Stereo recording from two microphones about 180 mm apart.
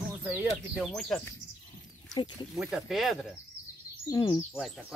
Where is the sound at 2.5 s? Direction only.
5° right (ahead or behind).